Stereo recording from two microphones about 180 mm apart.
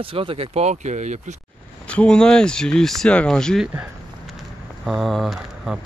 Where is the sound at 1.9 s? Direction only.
5° left (ahead or behind).